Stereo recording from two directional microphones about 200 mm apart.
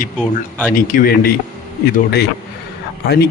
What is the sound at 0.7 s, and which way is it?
Speech, 45° left (ahead or behind).